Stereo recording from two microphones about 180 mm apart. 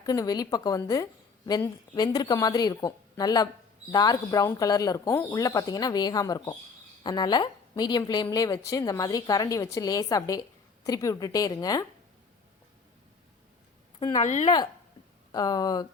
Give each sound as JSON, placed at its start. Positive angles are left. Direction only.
{"t": 0.0, "sound": "a woman's voice", "side_deg": 20}
{"t": 14.2, "sound": "speech", "side_deg": 40}
{"t": 15.3, "sound": "a woman's voice", "side_deg": 20}